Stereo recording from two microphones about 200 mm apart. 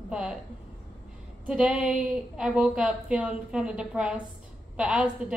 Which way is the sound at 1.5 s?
5° right (ahead or behind).